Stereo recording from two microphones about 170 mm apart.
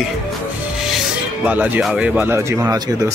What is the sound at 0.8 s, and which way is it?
Speech, 5° right (ahead or behind).